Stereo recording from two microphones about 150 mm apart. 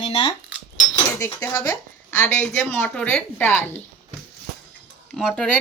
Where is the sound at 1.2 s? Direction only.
20° left (ahead or behind).